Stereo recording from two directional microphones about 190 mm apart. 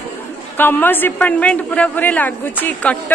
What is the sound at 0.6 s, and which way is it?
Speech, 10° left (ahead or behind).